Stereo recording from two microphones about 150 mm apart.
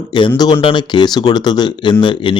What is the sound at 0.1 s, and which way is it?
Speech, 30° left (ahead or behind).